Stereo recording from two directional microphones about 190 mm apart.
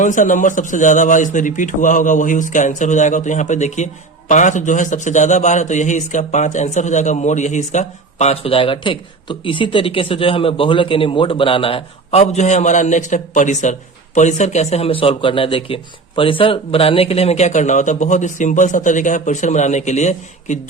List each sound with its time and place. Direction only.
0.0 s a man's voice: 40° left (ahead or behind)